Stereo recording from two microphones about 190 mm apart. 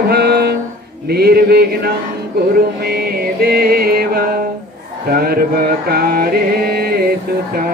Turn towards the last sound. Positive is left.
turn(degrees=-50)  # may be behind; listen again after turning